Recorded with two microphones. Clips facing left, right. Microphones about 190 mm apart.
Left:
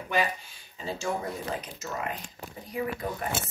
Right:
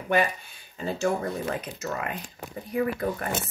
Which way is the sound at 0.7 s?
55° right (ahead or behind).